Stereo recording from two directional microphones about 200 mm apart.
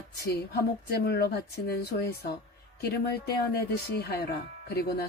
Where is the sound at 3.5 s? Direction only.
55° left (ahead or behind).